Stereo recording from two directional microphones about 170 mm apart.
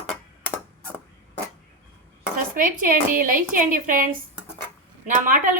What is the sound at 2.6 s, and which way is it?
A woman's voice, 55° right (ahead or behind).